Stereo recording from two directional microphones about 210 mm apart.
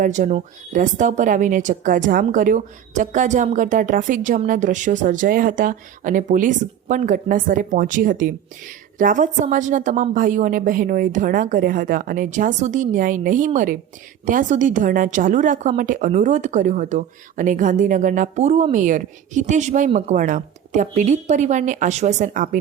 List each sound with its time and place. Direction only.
0.0 s speech: 35° right (ahead or behind)